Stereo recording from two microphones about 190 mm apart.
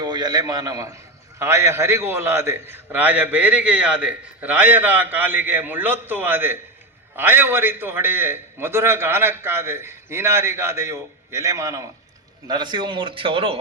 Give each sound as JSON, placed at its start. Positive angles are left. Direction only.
{"t": 0.0, "sound": "a man's voice", "side_deg": -20}